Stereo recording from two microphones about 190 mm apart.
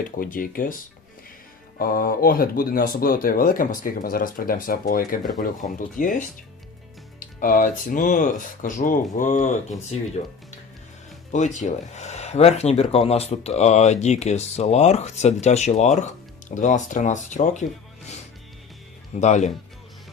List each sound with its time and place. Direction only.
0.2 s speech: 45° left (ahead or behind)
1.8 s speech: 50° left (ahead or behind)
7.3 s speech: 45° left (ahead or behind)
11.3 s speech: 40° left (ahead or behind)
19.2 s speech: 35° left (ahead or behind)